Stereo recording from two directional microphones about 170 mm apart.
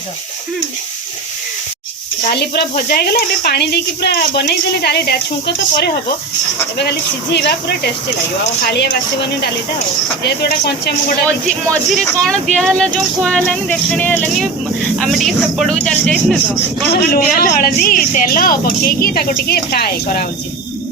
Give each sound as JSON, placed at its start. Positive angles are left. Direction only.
{"t": 2.3, "sound": "speech", "side_deg": 75}
{"t": 10.2, "sound": "speech", "side_deg": 70}
{"t": 11.3, "sound": "speech", "side_deg": 5}
{"t": 16.9, "sound": "a woman's voice", "side_deg": 60}